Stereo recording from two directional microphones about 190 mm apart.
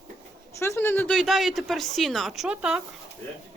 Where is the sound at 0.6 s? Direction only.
15° left (ahead or behind); by 2.8 s 5° right (ahead or behind).